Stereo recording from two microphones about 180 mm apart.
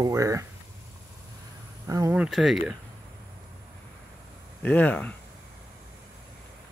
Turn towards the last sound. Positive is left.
turn(degrees=10)  # may be behind; listen again after turning